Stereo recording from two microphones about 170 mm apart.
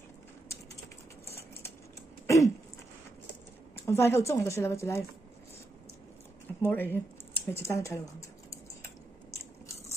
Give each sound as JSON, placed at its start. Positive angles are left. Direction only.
{"t": 2.2, "sound": "a sound", "side_deg": 20}
{"t": 3.7, "sound": "a woman's voice", "side_deg": 15}
{"t": 6.6, "sound": "a woman's voice", "side_deg": 10}